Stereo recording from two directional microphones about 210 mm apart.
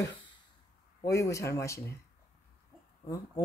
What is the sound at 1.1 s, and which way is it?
Speech, 15° left (ahead or behind).